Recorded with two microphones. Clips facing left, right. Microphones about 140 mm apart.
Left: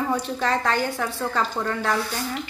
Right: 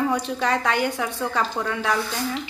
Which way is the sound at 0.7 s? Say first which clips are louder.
Right 1 dB; 15° right (ahead or behind).